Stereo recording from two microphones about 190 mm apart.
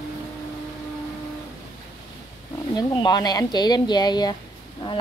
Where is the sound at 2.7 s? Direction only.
25° left (ahead or behind).